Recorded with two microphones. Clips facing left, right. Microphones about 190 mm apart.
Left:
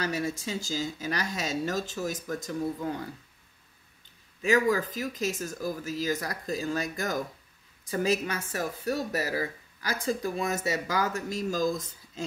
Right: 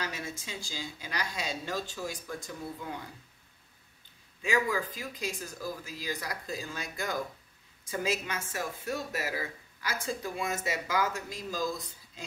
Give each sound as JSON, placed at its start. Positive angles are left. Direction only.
{"t": 0.0, "sound": "speech", "side_deg": 40}
{"t": 4.5, "sound": "speech", "side_deg": 40}